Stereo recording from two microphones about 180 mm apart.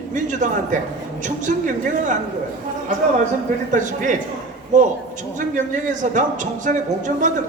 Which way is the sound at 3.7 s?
45° right (ahead or behind).